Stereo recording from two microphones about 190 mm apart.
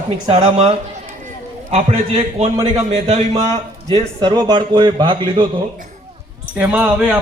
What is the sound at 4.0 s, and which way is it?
Speech, 25° right (ahead or behind).